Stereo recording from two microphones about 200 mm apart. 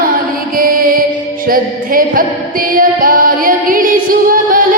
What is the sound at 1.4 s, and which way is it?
Female singing, 45° right (ahead or behind).